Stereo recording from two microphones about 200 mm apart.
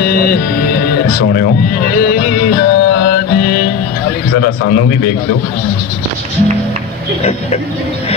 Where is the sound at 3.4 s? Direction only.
45° left (ahead or behind).